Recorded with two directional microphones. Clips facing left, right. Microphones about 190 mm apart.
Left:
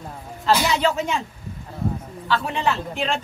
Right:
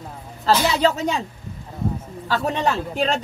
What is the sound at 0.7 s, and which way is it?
Speech, 35° right (ahead or behind).